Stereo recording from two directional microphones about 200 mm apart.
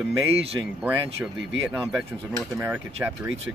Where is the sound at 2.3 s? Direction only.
10° right (ahead or behind).